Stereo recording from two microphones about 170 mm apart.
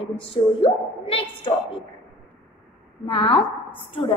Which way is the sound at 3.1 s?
35° left (ahead or behind).